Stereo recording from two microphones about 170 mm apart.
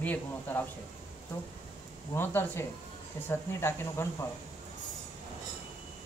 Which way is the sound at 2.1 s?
15° left (ahead or behind).